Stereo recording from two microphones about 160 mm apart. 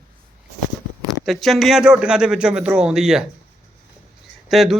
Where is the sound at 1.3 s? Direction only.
Centre (ahead or behind).